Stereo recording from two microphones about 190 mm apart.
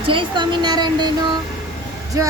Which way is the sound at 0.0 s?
25° right (ahead or behind).